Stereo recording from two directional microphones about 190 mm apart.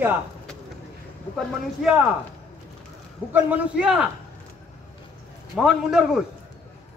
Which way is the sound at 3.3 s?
10° right (ahead or behind).